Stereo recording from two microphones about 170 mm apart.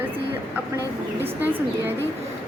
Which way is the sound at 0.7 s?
10° right (ahead or behind).